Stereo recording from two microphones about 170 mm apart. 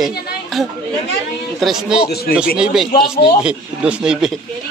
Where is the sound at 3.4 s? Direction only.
5° right (ahead or behind).